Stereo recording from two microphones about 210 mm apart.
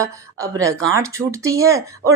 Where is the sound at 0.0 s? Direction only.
15° right (ahead or behind).